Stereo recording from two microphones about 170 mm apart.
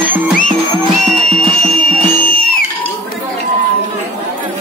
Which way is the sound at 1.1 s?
55° left (ahead or behind).